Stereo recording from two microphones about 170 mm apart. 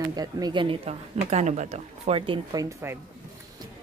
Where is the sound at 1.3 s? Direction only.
40° right (ahead or behind); by 2.9 s 15° right (ahead or behind).